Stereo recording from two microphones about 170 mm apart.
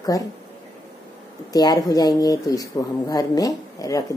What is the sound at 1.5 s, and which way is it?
A woman's voice, 20° left (ahead or behind).